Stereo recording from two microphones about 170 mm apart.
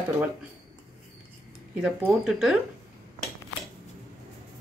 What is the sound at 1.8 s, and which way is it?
Speech, 5° right (ahead or behind).